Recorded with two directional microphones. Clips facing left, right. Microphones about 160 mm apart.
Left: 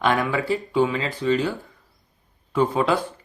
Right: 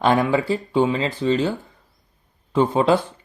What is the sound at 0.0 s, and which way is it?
Speech, 30° right (ahead or behind).